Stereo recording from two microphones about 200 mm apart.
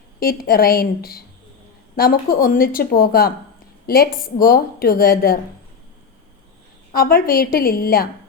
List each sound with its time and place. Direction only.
0.2 s a woman's voice: 50° left (ahead or behind)
6.9 s a woman's voice: 45° left (ahead or behind)